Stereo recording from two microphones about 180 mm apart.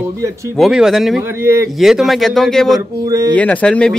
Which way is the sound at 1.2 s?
15° right (ahead or behind).